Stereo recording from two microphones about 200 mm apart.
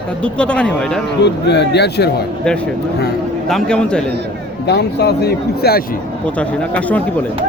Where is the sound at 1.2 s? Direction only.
60° left (ahead or behind).